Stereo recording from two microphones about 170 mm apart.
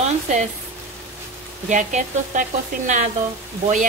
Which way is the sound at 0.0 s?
45° right (ahead or behind).